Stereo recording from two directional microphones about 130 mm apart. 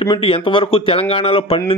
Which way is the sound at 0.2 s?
45° left (ahead or behind).